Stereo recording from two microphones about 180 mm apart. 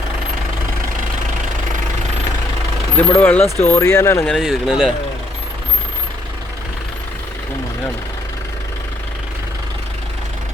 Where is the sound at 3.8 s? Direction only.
20° left (ahead or behind).